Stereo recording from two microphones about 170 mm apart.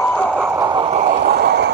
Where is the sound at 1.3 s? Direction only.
85° right.